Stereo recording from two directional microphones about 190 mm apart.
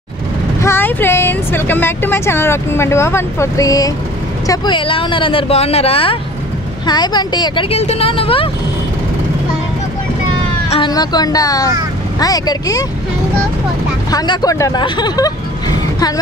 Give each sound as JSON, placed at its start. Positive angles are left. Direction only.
{"t": 0.6, "sound": "speech", "side_deg": 10}
{"t": 10.7, "sound": "speech", "side_deg": 25}
{"t": 14.1, "sound": "speech", "side_deg": 20}